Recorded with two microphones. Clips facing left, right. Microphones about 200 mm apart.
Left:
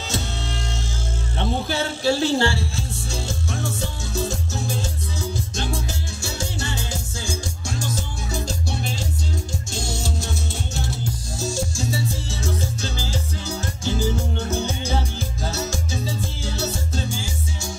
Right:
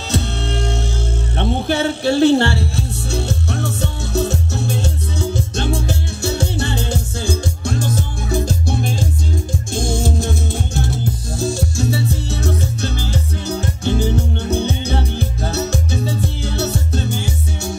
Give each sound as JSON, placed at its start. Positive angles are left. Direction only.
{"t": 0.1, "sound": "music", "side_deg": -60}